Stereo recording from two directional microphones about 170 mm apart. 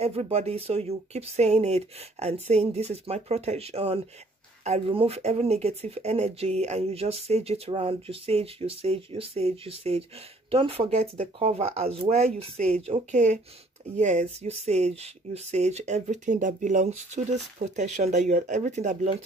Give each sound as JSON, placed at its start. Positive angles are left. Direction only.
{"t": 0.0, "sound": "speech", "side_deg": -35}